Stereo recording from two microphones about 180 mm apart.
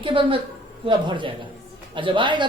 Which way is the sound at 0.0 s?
30° right (ahead or behind).